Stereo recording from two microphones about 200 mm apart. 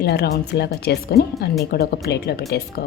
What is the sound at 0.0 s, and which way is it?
Speech, 55° left (ahead or behind).